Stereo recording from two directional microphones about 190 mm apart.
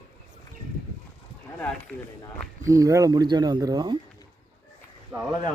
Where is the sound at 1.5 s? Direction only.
5° left (ahead or behind).